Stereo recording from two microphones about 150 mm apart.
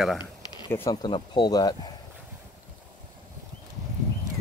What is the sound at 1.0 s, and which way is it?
Speech, 30° left (ahead or behind).